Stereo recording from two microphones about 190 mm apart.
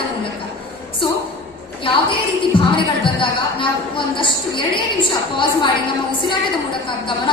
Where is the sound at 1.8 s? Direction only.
25° left (ahead or behind).